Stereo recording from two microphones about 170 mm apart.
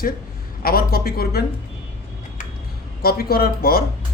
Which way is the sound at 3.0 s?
65° left (ahead or behind).